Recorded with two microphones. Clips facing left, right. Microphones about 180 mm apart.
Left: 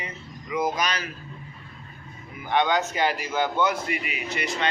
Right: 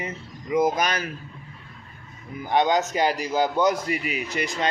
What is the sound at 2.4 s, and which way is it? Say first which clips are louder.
A man's voice: right 2 dB; 40° right (ahead or behind).